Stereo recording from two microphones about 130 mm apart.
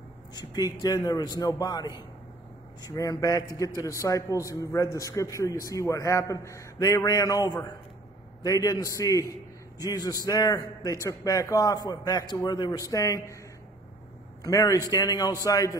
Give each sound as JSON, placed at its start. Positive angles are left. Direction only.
{"t": 0.3, "sound": "a man's voice", "side_deg": 30}
{"t": 14.4, "sound": "a man's voice", "side_deg": 25}